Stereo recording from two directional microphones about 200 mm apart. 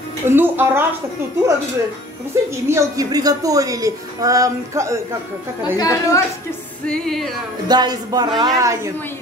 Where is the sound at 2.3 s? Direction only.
15° right (ahead or behind).